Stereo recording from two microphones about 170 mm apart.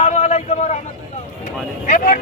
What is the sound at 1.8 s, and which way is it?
Vehicle, 50° left (ahead or behind).